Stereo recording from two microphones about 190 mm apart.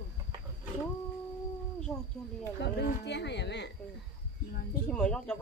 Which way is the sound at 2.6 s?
65° left (ahead or behind).